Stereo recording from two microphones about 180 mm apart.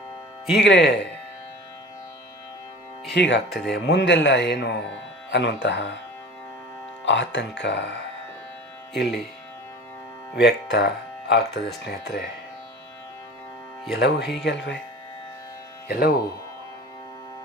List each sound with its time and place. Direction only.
0.5 s speech: 75° left (ahead or behind)
3.1 s speech: 75° left (ahead or behind)
7.0 s speech: 85° left
10.3 s speech: 70° left (ahead or behind)
13.9 s speech: 70° left (ahead or behind)
15.9 s speech: 60° left (ahead or behind)